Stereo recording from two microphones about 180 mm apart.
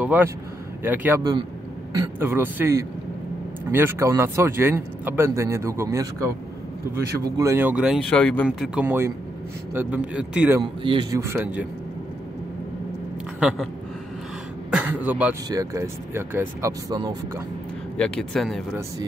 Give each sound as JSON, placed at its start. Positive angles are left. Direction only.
{"t": 0.0, "sound": "speech", "side_deg": -10}
{"t": 8.1, "sound": "speech", "side_deg": 10}
{"t": 8.5, "sound": "speech", "side_deg": -5}
{"t": 10.6, "sound": "a man's voice", "side_deg": -25}
{"t": 13.4, "sound": "speech", "side_deg": -5}
{"t": 14.7, "sound": "throat clearing", "side_deg": -10}
{"t": 15.5, "sound": "speech", "side_deg": -20}
{"t": 17.9, "sound": "speech", "side_deg": 5}